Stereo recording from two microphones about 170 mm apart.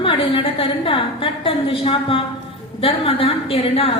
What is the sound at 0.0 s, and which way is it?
A woman's voice, 30° left (ahead or behind).